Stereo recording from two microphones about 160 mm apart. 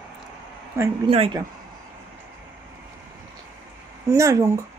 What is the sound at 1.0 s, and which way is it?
Speech, 40° right (ahead or behind).